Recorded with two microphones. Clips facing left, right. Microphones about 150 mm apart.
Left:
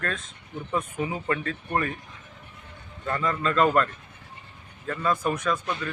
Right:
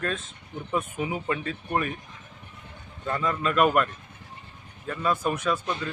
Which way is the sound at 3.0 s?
10° right (ahead or behind).